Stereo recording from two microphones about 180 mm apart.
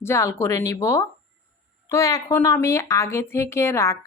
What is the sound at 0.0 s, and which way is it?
Speech, 15° left (ahead or behind).